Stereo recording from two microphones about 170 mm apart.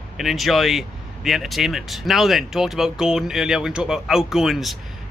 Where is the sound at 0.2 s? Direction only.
Centre (ahead or behind).